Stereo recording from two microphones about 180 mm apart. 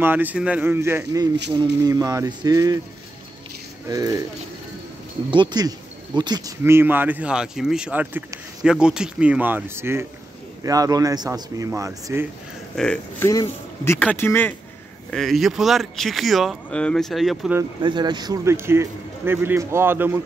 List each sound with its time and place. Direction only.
0.0 s a man's voice: 10° right (ahead or behind)
3.9 s a man's voice: 20° right (ahead or behind)
5.3 s a man's voice: 25° right (ahead or behind)
12.7 s speech: 5° left (ahead or behind)
13.3 s speech: 20° left (ahead or behind); by 17.6 s centre (ahead or behind)
17.8 s speech: 25° right (ahead or behind)